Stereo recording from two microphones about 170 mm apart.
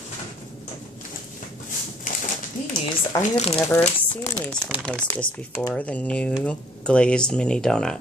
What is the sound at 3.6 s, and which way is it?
Speech, 10° left (ahead or behind).